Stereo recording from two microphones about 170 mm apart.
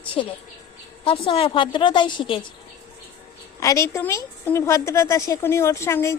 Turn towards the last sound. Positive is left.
turn(degrees=15)  # may be behind; listen again after turning